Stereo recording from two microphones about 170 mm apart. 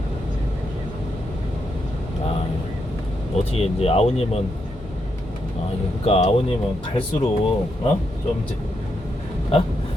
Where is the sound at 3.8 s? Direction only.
35° left (ahead or behind).